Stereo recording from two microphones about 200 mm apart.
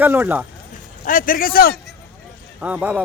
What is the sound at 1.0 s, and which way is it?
Speech, 45° left (ahead or behind).